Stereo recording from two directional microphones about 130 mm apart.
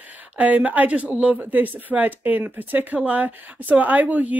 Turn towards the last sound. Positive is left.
turn(degrees=-10)  # may be behind; listen again after turning